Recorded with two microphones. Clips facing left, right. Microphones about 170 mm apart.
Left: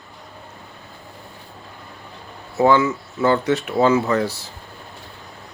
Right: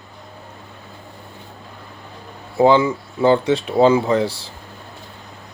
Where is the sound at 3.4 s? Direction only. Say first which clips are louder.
Right 3 dB; 30° right (ahead or behind).